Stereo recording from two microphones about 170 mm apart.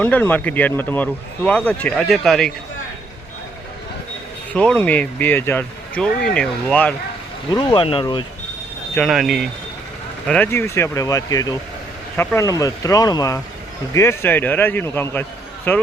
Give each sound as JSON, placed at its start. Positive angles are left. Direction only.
{"t": 0.0, "sound": "speech", "side_deg": 10}
{"t": 4.5, "sound": "speech", "side_deg": 5}
{"t": 7.5, "sound": "speech", "side_deg": 30}
{"t": 9.0, "sound": "speech", "side_deg": 0}
{"t": 10.2, "sound": "speech", "side_deg": 10}